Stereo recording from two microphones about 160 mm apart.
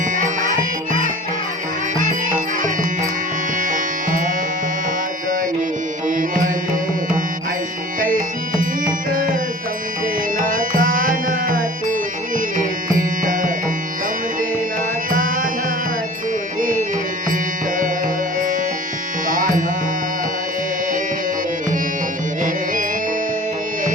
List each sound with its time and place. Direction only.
0.0 s music: 55° right (ahead or behind)
3.6 s music: 55° right (ahead or behind)
6.1 s music: 55° right (ahead or behind)
7.9 s music: 60° right (ahead or behind)
13.0 s music: 55° right (ahead or behind)
15.1 s music: 55° right (ahead or behind)
16.6 s music: 55° right (ahead or behind)
19.3 s music: 55° right (ahead or behind)